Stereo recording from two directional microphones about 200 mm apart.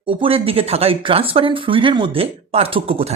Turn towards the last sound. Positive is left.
turn(degrees=-30)  # may be behind; listen again after turning